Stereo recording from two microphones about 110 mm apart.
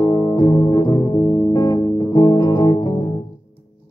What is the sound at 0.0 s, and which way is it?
Music, 35° left (ahead or behind).